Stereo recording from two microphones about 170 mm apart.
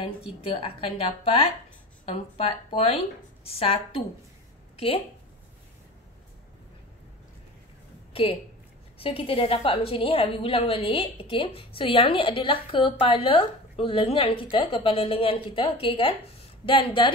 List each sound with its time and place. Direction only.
0.0 s a woman's voice: 35° left (ahead or behind)
8.1 s a woman's voice: 35° left (ahead or behind)